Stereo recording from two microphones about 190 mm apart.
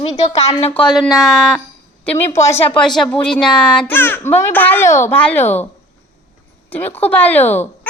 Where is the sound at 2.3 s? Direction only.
15° left (ahead or behind).